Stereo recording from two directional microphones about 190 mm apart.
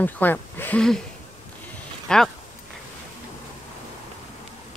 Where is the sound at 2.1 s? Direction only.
5° left (ahead or behind).